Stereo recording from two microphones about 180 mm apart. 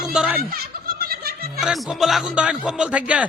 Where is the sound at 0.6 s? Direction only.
60° right (ahead or behind).